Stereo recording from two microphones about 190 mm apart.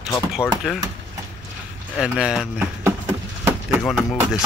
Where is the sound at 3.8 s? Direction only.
Centre (ahead or behind).